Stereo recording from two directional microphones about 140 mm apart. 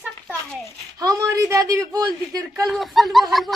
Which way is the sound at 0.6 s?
25° right (ahead or behind).